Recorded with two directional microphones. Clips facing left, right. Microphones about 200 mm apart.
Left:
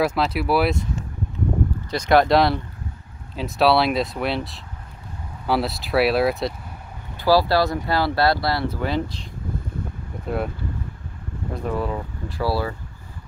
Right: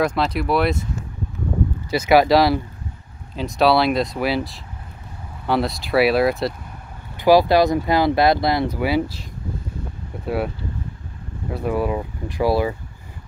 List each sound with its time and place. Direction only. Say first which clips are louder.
0.0 s speech: right 1 dB; 5° left (ahead or behind)
1.9 s speech: right 2 dB; 5° right (ahead or behind)
7.2 s speech: right 4 dB; 20° right (ahead or behind)
11.5 s speech: right 4 dB; 10° right (ahead or behind)